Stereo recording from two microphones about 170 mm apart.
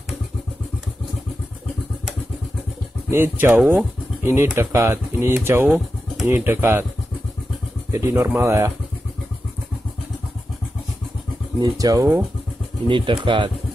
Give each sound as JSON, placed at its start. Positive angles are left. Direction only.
{"t": 3.1, "sound": "speech", "side_deg": -10}
{"t": 7.9, "sound": "speech", "side_deg": -15}
{"t": 11.7, "sound": "speech", "side_deg": -20}
{"t": 12.8, "sound": "speech", "side_deg": -30}